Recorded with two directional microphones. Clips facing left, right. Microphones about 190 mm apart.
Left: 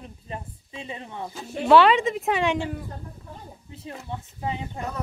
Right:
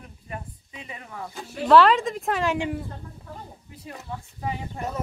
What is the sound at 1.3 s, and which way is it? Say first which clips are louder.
Speech: even; centre (ahead or behind).